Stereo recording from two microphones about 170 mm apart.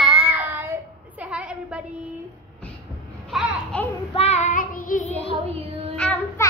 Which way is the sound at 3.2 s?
Centre (ahead or behind).